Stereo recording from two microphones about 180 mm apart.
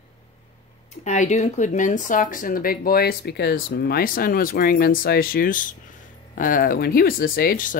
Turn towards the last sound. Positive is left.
turn(degrees=50)  # may be behind; listen again after turning